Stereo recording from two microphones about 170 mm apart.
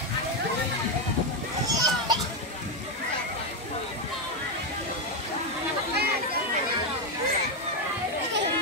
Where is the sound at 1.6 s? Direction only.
20° right (ahead or behind).